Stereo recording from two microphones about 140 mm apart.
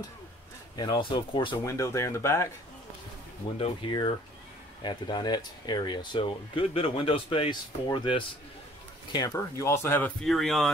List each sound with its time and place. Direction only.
0.7 s speech: 30° left (ahead or behind)
1.6 s speech: 20° left (ahead or behind)
3.5 s speech: 40° left (ahead or behind); by 10.7 s centre (ahead or behind)